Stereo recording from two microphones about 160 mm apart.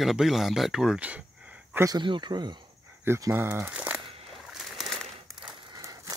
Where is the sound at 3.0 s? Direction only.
15° right (ahead or behind).